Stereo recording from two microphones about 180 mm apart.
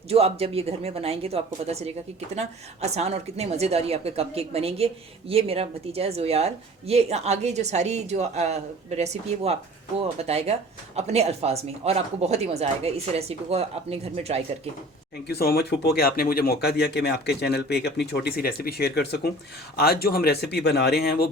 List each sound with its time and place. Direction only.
0.1 s speech: 35° right (ahead or behind)
15.3 s speech: 60° left (ahead or behind)